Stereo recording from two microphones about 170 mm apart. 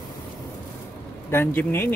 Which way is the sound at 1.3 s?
15° left (ahead or behind).